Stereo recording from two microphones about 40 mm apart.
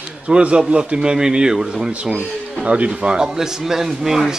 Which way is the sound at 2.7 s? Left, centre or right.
Right.